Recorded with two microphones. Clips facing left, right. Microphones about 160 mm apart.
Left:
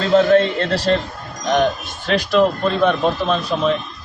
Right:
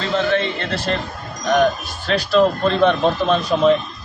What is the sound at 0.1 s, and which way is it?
Speech, 40° left (ahead or behind).